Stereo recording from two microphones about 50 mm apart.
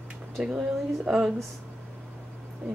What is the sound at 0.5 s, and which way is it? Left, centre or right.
Speech, centre.